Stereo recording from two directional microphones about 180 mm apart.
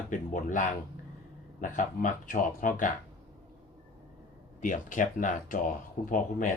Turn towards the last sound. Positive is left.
turn(degrees=45)  # may be behind; listen again after turning